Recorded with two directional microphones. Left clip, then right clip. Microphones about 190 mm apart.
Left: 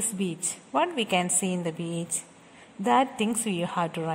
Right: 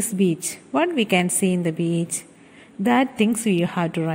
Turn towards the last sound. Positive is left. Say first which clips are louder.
# right 4 dB
turn(degrees=-15)  # may be behind; listen again after turning